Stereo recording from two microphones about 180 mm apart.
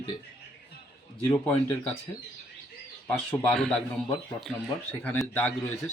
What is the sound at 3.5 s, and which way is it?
Speech, 5° left (ahead or behind).